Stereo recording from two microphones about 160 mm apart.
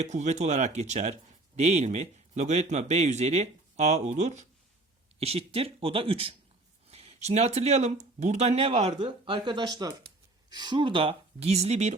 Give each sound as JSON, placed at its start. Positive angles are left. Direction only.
{"t": 0.0, "sound": "speech", "side_deg": -45}